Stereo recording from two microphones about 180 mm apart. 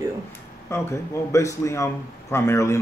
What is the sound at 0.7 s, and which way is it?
A man's voice, 15° left (ahead or behind).